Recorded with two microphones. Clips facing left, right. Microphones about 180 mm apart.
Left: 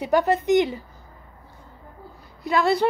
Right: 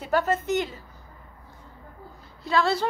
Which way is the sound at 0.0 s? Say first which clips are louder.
Left 4 dB; 15° left (ahead or behind).